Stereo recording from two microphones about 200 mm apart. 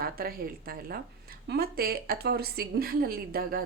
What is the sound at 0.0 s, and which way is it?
Speech, 50° right (ahead or behind).